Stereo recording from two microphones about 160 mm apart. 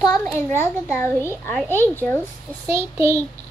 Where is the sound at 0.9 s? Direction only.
15° left (ahead or behind).